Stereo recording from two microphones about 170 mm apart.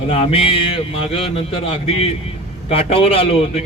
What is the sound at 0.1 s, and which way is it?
A man's voice, 35° left (ahead or behind).